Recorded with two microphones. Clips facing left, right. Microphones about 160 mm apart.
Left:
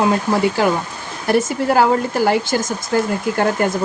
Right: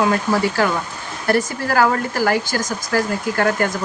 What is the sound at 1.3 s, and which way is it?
Speech, 20° left (ahead or behind).